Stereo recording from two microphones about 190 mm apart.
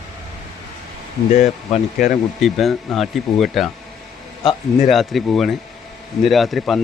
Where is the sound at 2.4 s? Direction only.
Centre (ahead or behind).